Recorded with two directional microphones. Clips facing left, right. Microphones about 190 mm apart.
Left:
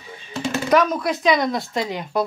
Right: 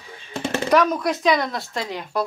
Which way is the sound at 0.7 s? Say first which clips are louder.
Even; 5° left (ahead or behind).